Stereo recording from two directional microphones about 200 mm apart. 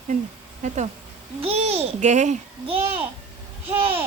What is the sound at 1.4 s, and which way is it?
A woman's voice, 30° right (ahead or behind).